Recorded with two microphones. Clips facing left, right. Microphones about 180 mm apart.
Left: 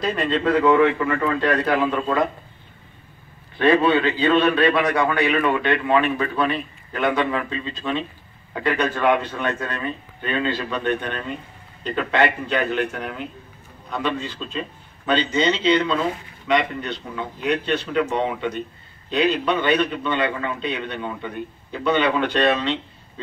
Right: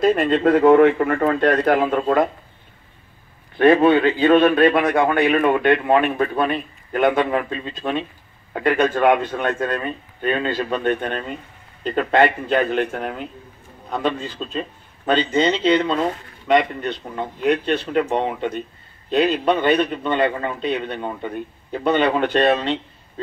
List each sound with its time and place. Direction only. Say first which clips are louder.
0.0 s a man's voice: right 6 dB; 50° right (ahead or behind)
3.5 s a man's voice: right 4 dB; 50° right (ahead or behind)